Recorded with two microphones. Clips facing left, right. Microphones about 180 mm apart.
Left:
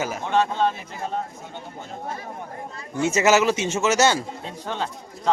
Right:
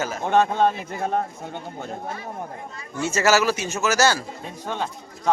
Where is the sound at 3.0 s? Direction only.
20° left (ahead or behind).